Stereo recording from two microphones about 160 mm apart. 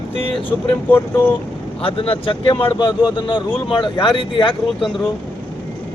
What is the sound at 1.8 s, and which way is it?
A man's voice, 35° left (ahead or behind).